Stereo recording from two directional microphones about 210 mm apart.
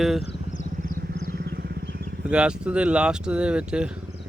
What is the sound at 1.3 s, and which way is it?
Wild animals, 50° right (ahead or behind).